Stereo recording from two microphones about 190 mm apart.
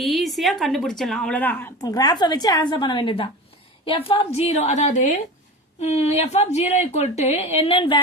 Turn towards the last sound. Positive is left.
turn(degrees=30)  # may be behind; listen again after turning